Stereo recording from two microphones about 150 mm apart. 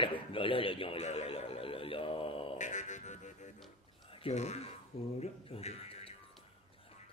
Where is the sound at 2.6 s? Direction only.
55° left (ahead or behind).